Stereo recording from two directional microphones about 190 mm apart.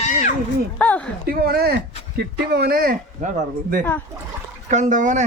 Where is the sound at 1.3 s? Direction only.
55° right (ahead or behind).